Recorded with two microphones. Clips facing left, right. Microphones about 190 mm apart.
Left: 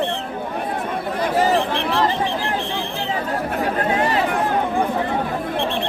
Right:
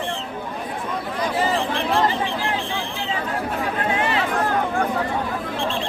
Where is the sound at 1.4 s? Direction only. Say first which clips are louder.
Left 5 dB; 40° left (ahead or behind).